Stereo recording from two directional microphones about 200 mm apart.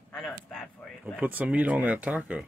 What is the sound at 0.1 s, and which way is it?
Speech, centre (ahead or behind).